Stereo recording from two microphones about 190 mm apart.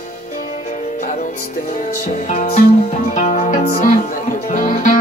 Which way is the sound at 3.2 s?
40° left (ahead or behind).